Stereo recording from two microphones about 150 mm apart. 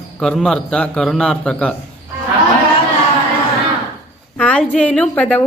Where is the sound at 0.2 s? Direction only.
5° left (ahead or behind).